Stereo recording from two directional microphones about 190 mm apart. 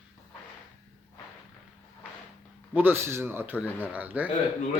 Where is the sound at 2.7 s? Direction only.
10° right (ahead or behind).